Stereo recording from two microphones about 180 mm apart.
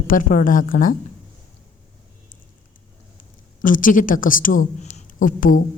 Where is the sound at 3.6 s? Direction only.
50° left (ahead or behind).